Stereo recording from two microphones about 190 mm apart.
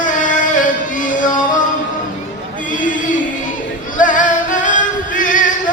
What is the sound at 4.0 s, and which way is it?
Music, 45° left (ahead or behind).